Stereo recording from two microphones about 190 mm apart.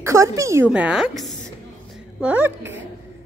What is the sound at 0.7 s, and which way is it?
A woman's voice, 5° right (ahead or behind).